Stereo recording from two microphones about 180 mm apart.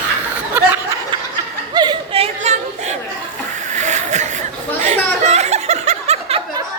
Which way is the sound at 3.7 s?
40° right (ahead or behind).